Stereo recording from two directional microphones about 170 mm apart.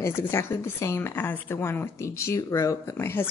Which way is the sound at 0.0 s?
15° left (ahead or behind).